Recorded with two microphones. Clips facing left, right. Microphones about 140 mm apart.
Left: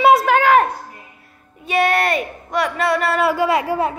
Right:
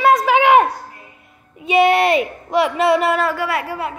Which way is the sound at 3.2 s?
15° left (ahead or behind).